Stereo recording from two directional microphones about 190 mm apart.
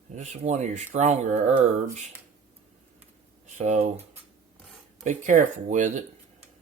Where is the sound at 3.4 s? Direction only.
40° right (ahead or behind).